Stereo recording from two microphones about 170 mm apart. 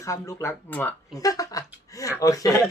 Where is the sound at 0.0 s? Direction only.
15° left (ahead or behind).